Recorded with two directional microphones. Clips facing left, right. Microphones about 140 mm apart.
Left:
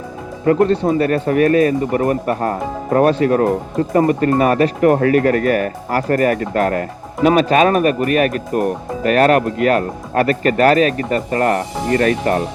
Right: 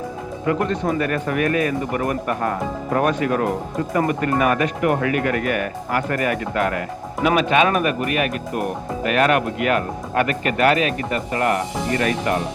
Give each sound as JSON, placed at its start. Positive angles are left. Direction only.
{"t": 0.4, "sound": "speech", "side_deg": 35}